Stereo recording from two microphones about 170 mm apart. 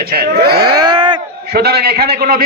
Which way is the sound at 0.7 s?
25° right (ahead or behind).